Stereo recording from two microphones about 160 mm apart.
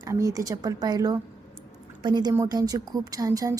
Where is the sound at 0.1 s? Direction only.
20° right (ahead or behind).